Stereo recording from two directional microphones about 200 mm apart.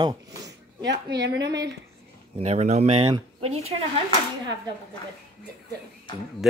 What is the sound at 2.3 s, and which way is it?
A woman's voice, 35° right (ahead or behind).